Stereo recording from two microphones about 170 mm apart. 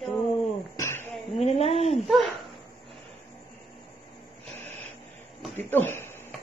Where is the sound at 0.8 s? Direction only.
15° left (ahead or behind).